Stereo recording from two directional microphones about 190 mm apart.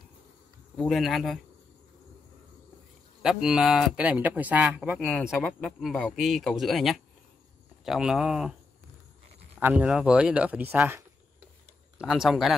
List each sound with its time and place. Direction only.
0.7 s speech: centre (ahead or behind)
3.2 s speech: 5° right (ahead or behind)
9.6 s speech: 10° right (ahead or behind)